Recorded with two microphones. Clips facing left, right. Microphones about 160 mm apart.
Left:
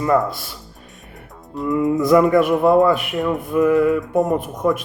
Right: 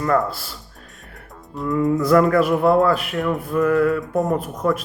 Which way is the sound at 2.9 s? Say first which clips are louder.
Left 1 dB; centre (ahead or behind).